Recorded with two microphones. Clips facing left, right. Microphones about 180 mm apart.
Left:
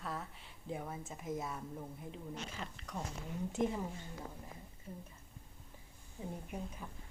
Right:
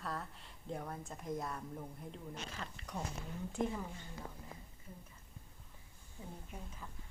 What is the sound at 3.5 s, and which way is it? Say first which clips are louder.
Speech: left 2 dB; 20° left (ahead or behind).